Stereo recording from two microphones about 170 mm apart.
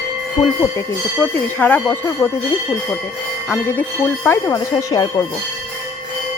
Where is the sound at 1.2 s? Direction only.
10° left (ahead or behind).